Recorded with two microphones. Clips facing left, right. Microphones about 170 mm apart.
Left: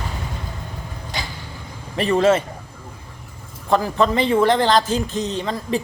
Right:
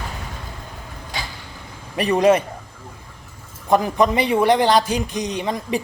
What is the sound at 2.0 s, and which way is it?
Speech, 15° right (ahead or behind).